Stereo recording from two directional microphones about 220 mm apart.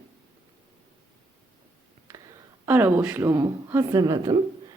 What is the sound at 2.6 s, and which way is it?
Speech, 10° right (ahead or behind).